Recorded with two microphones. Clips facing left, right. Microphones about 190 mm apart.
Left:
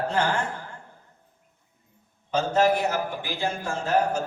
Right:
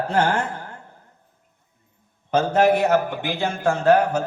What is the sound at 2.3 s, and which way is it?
A man's voice, 60° right (ahead or behind).